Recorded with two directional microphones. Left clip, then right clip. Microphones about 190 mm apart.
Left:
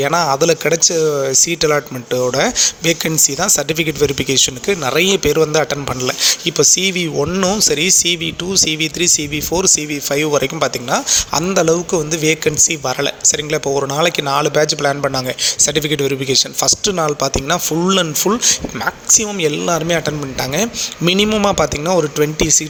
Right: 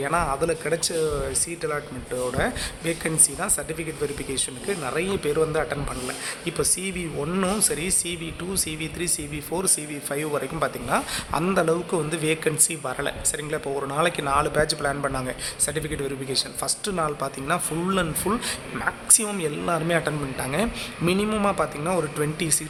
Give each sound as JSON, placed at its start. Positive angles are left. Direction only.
{"t": 0.0, "sound": "speech", "side_deg": 35}
{"t": 7.3, "sound": "a man's voice", "side_deg": 20}
{"t": 21.4, "sound": "a man's voice", "side_deg": 30}